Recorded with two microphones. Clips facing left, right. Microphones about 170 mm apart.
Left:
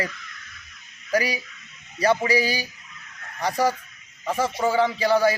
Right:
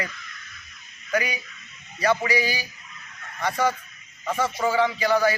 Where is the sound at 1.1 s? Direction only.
30° left (ahead or behind).